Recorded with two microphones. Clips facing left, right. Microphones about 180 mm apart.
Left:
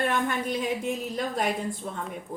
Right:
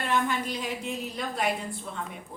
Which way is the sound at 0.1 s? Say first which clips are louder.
Left 1 dB; 50° left (ahead or behind).